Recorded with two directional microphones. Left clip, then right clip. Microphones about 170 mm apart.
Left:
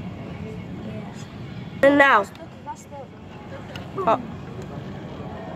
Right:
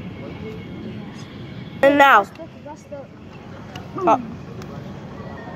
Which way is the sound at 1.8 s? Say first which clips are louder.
Right 3 dB; centre (ahead or behind).